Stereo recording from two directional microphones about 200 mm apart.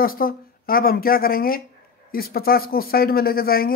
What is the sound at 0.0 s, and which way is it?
Speech, 45° left (ahead or behind).